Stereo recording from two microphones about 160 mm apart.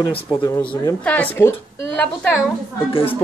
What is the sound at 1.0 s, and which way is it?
A man's voice, 10° left (ahead or behind).